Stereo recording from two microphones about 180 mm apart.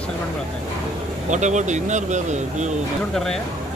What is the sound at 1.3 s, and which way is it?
Speech, 40° right (ahead or behind).